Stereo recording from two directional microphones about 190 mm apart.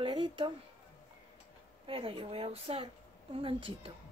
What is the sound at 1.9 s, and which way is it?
Speech, 30° right (ahead or behind).